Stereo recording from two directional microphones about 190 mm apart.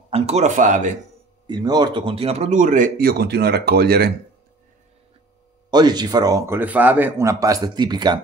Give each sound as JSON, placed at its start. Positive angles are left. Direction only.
{"t": 0.1, "sound": "speech", "side_deg": -35}
{"t": 1.5, "sound": "speech", "side_deg": -20}
{"t": 5.7, "sound": "a man's voice", "side_deg": -20}